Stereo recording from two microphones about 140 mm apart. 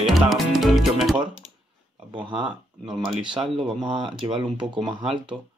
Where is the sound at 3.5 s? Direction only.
35° right (ahead or behind).